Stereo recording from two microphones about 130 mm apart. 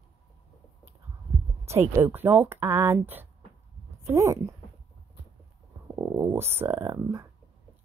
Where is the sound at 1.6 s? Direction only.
20° right (ahead or behind).